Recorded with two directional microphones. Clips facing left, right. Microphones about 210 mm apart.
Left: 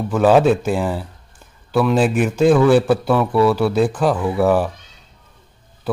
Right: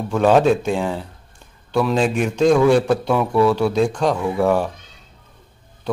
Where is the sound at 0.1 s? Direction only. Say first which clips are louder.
Left 1 dB; 5° left (ahead or behind).